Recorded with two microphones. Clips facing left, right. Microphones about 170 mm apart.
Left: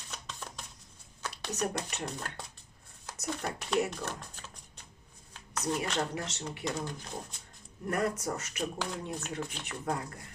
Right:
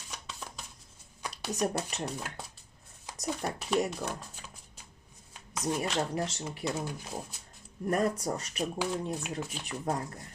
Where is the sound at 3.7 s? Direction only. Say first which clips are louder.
Right 1 dB; 10° right (ahead or behind).